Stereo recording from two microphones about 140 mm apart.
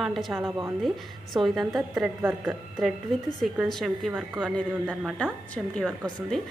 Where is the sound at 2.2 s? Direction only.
15° right (ahead or behind).